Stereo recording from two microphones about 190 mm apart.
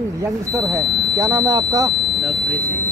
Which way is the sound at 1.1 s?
20° right (ahead or behind).